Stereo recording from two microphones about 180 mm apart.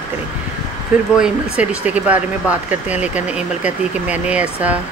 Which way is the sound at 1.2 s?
5° right (ahead or behind).